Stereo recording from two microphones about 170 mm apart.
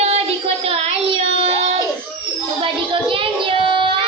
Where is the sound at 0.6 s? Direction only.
35° right (ahead or behind).